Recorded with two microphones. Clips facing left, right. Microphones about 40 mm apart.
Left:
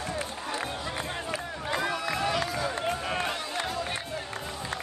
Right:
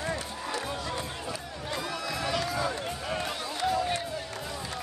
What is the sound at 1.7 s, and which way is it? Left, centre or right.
Run, left.